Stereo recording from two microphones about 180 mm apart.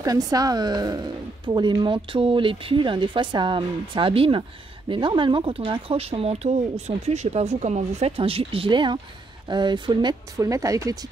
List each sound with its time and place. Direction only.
0.0 s speech: 20° right (ahead or behind)